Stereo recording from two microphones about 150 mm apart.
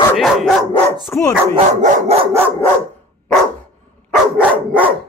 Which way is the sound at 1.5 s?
45° right (ahead or behind).